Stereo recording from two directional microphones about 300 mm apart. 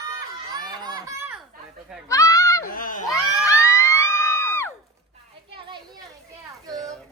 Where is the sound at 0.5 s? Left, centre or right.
Centre.